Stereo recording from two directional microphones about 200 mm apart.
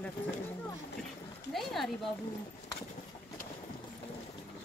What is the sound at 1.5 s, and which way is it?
Speech, centre (ahead or behind).